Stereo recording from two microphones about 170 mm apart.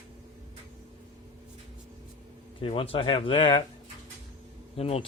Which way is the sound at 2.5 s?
30° left (ahead or behind).